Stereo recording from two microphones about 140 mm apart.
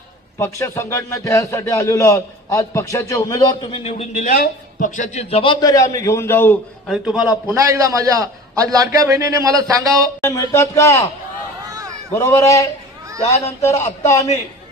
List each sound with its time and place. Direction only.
0.3 s a man's voice: 20° left (ahead or behind); by 5.2 s 60° left (ahead or behind)
5.3 s a man's voice: 35° left (ahead or behind); by 6.6 s 15° left (ahead or behind)
6.8 s a man's voice: 5° right (ahead or behind)
7.5 s a man's voice: 25° right (ahead or behind)
10.2 s a man's voice: 20° left (ahead or behind)
11.6 s run: 25° right (ahead or behind)
12.1 s a man's voice: 20° left (ahead or behind)